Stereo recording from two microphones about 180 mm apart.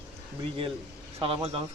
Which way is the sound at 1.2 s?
30° right (ahead or behind).